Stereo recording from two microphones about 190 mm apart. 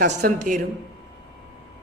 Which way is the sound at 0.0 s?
50° right (ahead or behind).